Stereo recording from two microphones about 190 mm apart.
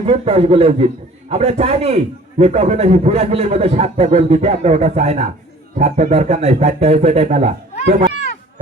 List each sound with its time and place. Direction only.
0.0 s a man's voice: 30° right (ahead or behind)